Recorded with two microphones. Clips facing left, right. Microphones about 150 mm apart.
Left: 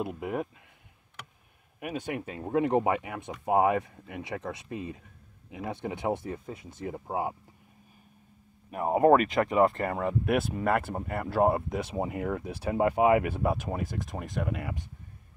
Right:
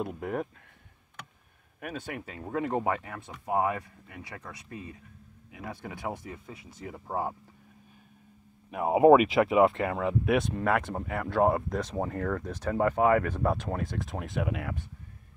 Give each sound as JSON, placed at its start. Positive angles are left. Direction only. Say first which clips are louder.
{"t": 0.0, "sound": "speech", "louder": "even", "side_deg": 5}
{"t": 1.8, "sound": "speech", "louder": "left 4 dB", "side_deg": 15}
{"t": 7.1, "sound": "speech", "louder": "even", "side_deg": 10}
{"t": 8.6, "sound": "speech", "louder": "right 2 dB", "side_deg": 0}